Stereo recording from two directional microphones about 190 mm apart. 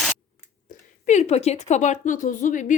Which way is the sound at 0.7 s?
45° left (ahead or behind).